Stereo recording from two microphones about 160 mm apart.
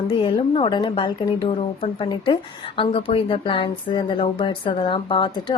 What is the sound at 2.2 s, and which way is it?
A woman's voice, 35° left (ahead or behind).